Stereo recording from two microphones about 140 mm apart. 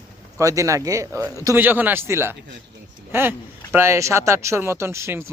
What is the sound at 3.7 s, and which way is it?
Speech, 20° right (ahead or behind).